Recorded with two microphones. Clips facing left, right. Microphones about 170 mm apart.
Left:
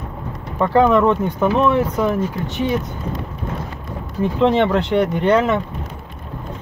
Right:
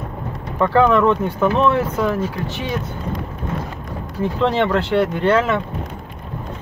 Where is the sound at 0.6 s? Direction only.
15° left (ahead or behind).